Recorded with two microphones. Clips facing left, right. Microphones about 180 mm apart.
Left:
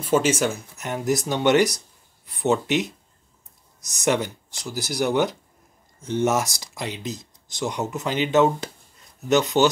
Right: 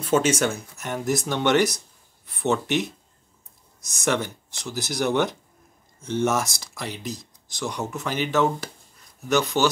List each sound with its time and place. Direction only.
0.0 s speech: centre (ahead or behind)
0.7 s speech: 15° left (ahead or behind)
4.0 s speech: 15° left (ahead or behind)